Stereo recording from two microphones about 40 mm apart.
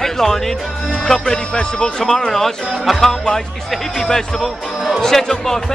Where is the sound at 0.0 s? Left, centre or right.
Centre.